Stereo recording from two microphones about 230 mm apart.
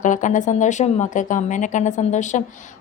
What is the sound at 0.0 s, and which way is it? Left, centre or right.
Speech, left.